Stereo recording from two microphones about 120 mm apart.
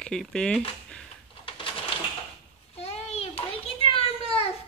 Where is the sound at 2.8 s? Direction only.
60° left (ahead or behind).